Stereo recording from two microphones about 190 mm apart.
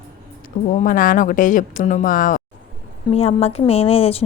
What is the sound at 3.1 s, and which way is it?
A woman's voice, 30° left (ahead or behind).